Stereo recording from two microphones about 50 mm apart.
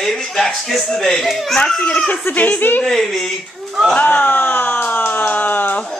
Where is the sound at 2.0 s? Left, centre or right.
Left.